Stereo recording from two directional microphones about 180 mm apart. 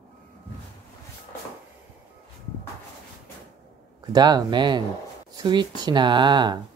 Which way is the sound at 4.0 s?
25° right (ahead or behind).